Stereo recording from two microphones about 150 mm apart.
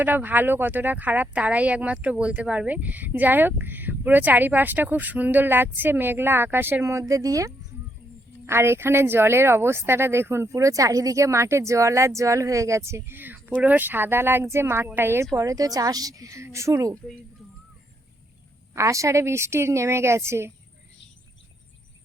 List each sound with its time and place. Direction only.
0.0 s a woman's voice: 10° right (ahead or behind)
18.7 s speech: 20° right (ahead or behind)